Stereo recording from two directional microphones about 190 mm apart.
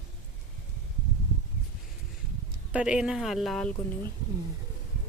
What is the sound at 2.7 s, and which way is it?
Speech, 5° right (ahead or behind).